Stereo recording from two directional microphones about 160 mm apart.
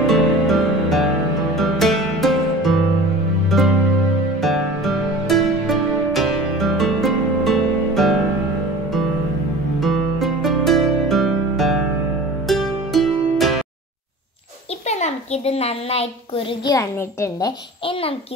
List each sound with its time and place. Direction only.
0.0 s music: centre (ahead or behind)
9.8 s music: centre (ahead or behind)
14.9 s a sound: 45° left (ahead or behind)
16.6 s a child's voice: 20° left (ahead or behind)